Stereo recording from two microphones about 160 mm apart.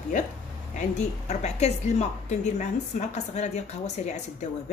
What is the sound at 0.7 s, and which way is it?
A woman's voice, 45° left (ahead or behind).